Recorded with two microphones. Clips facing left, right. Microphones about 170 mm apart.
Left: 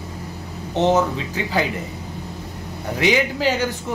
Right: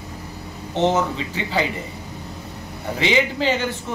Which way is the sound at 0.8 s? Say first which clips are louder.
Left 2 dB; 15° left (ahead or behind).